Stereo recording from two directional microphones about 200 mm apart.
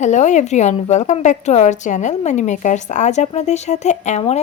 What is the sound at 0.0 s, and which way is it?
A woman's voice, 35° left (ahead or behind).